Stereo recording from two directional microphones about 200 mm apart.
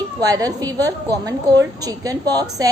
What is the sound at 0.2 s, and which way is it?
A woman's voice, 20° right (ahead or behind).